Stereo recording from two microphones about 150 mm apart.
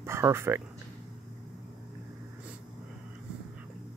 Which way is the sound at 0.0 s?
15° right (ahead or behind).